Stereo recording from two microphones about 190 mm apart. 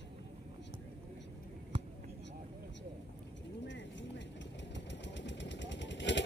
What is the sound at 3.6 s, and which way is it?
Vehicle, 70° left (ahead or behind).